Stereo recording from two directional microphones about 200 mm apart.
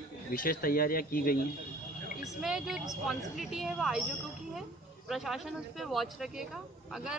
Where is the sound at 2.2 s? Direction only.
Centre (ahead or behind).